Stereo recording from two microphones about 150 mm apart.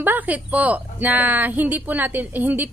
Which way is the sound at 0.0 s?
10° right (ahead or behind).